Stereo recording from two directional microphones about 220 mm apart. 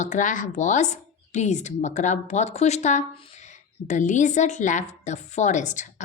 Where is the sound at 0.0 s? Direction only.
35° left (ahead or behind).